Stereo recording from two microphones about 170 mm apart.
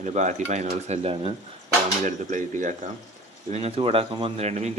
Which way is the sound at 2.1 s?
45° right (ahead or behind).